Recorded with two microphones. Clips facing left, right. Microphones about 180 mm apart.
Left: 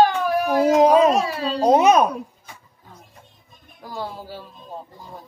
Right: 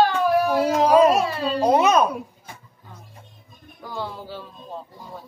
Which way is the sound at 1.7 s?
15° left (ahead or behind).